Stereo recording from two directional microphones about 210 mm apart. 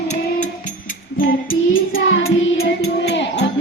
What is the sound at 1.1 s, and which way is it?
Music, 40° left (ahead or behind).